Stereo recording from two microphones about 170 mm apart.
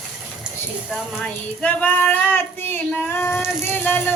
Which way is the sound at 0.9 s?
5° left (ahead or behind).